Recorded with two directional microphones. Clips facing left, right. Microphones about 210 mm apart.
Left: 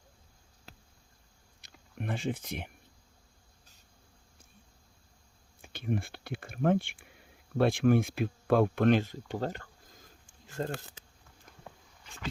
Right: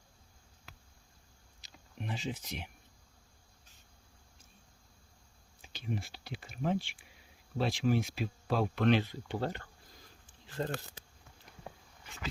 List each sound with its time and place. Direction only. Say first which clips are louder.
1.6 s speech: left 5 dB; 55° left (ahead or behind)
5.6 s speech: left 6 dB; 55° left (ahead or behind)